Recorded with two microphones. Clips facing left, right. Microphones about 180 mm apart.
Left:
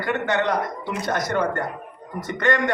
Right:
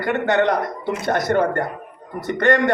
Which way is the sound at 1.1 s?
50° right (ahead or behind).